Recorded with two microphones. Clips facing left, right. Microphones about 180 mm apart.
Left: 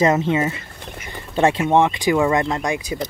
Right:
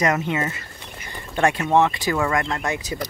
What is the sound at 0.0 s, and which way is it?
Speech, 25° left (ahead or behind).